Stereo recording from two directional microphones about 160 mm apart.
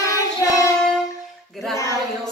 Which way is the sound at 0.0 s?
20° left (ahead or behind).